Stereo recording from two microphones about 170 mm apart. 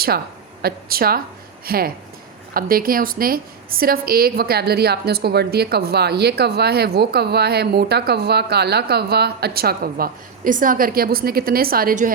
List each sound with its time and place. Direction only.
0.6 s a woman's voice: 60° right (ahead or behind)